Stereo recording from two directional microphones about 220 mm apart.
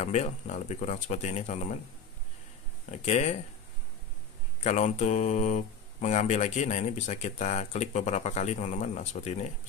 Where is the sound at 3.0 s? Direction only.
30° left (ahead or behind).